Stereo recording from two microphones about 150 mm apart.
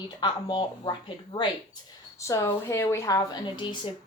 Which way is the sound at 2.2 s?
20° left (ahead or behind).